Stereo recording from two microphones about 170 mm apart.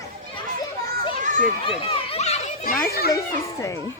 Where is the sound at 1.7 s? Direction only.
35° left (ahead or behind); by 3.1 s 65° left (ahead or behind).